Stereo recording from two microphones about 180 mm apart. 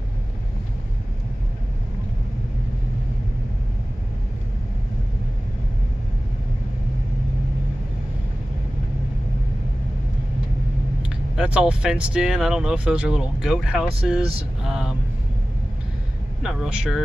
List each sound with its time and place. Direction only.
11.0 s speech: 5° right (ahead or behind)
16.4 s speech: 5° right (ahead or behind)